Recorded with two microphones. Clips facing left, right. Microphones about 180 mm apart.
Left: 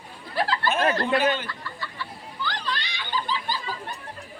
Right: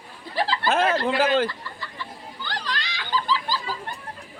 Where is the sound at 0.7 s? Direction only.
90° right.